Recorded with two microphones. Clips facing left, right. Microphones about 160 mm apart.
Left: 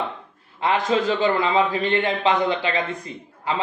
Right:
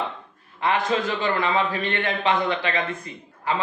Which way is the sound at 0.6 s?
25° left (ahead or behind).